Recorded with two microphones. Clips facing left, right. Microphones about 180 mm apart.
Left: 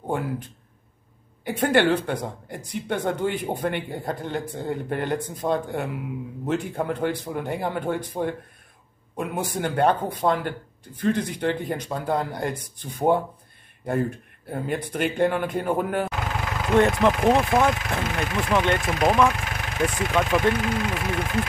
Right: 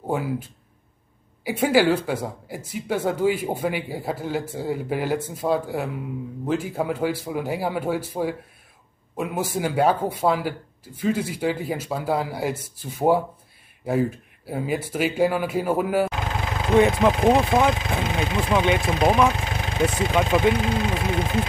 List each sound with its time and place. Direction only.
0.0 s a sound: 5° right (ahead or behind)
1.4 s speech: 5° right (ahead or behind)
16.1 s vehicle: 20° right (ahead or behind)
17.0 s speech: 15° right (ahead or behind)
18.8 s speech: 25° right (ahead or behind)